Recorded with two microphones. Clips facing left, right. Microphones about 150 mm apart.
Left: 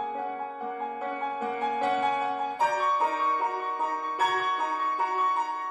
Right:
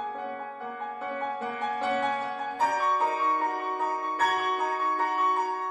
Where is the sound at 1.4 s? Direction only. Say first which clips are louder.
Left 2 dB; 15° left (ahead or behind).